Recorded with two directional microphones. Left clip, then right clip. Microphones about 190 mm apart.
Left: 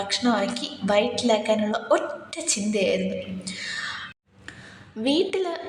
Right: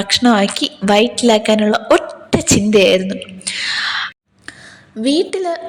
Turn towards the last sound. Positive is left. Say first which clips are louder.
# right 7 dB
turn(degrees=-25)  # may be behind; listen again after turning